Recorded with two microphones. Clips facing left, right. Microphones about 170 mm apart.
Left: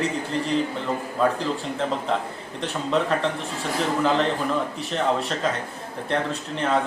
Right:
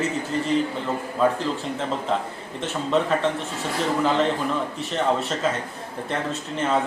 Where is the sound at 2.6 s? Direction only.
Centre (ahead or behind).